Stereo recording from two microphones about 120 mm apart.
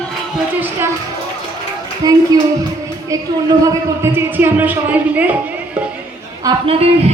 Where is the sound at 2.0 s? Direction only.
30° right (ahead or behind).